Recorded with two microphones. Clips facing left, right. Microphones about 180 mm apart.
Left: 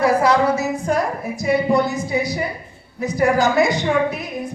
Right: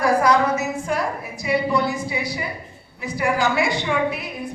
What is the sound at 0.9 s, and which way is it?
A woman's voice, 45° left (ahead or behind).